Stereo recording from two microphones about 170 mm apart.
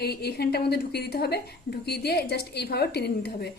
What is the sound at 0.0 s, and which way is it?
A woman's voice, 70° left (ahead or behind).